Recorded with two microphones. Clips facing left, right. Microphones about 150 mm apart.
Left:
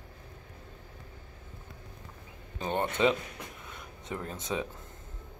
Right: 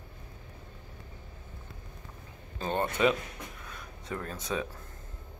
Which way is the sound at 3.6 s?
20° left (ahead or behind).